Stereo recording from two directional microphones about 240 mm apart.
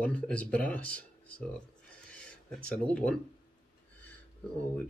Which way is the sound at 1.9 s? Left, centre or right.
Centre.